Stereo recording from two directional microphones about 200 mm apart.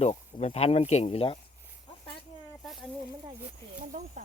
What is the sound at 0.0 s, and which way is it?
Speech, 35° left (ahead or behind).